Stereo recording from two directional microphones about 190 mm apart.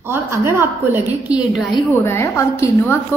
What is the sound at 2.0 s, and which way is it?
Speech, 15° left (ahead or behind).